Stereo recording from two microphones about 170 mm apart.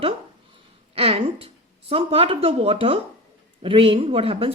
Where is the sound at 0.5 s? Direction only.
35° right (ahead or behind).